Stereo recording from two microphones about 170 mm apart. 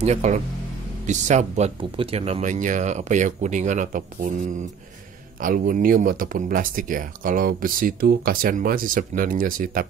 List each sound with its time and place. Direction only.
0.0 s speech: 40° right (ahead or behind)
5.4 s speech: 55° right (ahead or behind)